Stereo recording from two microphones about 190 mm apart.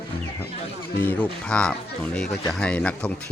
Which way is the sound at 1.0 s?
10° left (ahead or behind).